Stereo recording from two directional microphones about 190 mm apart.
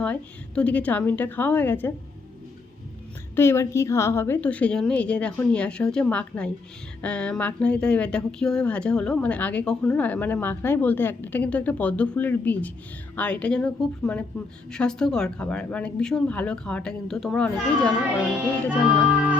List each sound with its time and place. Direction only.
0.0 s speech: 5° left (ahead or behind)
3.3 s speech: 15° left (ahead or behind); by 19.4 s 5° right (ahead or behind)